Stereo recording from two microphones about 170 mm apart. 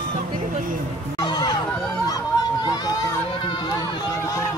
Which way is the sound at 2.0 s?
20° left (ahead or behind).